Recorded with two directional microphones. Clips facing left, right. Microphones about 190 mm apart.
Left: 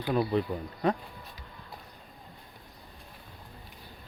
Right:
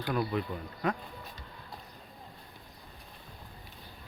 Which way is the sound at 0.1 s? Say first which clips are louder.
Left 5 dB; 30° left (ahead or behind).